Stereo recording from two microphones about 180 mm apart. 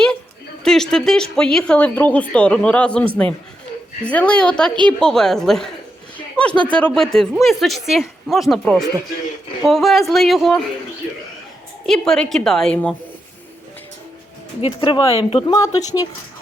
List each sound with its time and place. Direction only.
0.6 s speech: 5° left (ahead or behind)
6.3 s a sound: 5° left (ahead or behind)
6.7 s speech: 5° left (ahead or behind)
11.9 s speech: 5° left (ahead or behind)
14.6 s speech: 30° left (ahead or behind)